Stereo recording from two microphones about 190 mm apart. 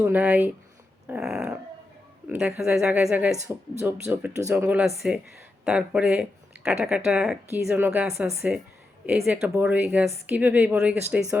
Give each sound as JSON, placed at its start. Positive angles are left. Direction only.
{"t": 0.0, "sound": "speech", "side_deg": -10}